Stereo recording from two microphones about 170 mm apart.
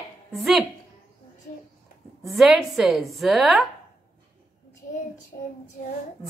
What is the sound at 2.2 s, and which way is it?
Speech, centre (ahead or behind).